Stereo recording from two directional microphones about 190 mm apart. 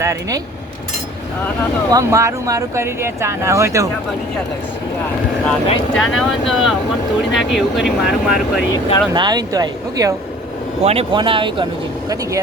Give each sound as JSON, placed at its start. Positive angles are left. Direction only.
{"t": 0.0, "sound": "speech", "side_deg": -15}
{"t": 1.9, "sound": "speech", "side_deg": -15}
{"t": 5.5, "sound": "speech", "side_deg": 0}
{"t": 9.1, "sound": "speech", "side_deg": -20}
{"t": 10.8, "sound": "speech", "side_deg": -30}